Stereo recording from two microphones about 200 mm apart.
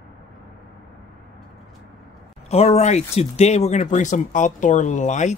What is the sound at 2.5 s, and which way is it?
Speech, 30° left (ahead or behind).